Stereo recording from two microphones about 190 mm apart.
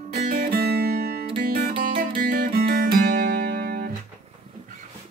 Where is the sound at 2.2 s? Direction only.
45° right (ahead or behind).